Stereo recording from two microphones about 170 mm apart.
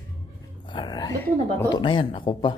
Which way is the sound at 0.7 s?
25° left (ahead or behind).